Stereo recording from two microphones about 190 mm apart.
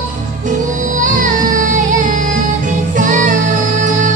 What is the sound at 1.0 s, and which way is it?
Music, 45° right (ahead or behind).